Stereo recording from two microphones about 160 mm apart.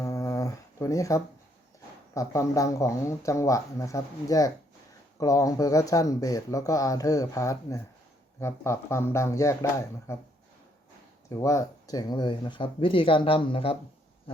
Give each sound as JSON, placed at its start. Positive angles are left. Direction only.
{"t": 0.0, "sound": "dog", "side_deg": 20}
{"t": 2.1, "sound": "speech", "side_deg": 20}
{"t": 11.3, "sound": "speech", "side_deg": 20}